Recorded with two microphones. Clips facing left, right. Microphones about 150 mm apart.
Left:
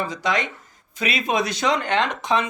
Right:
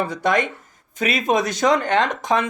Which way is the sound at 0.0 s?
55° right (ahead or behind).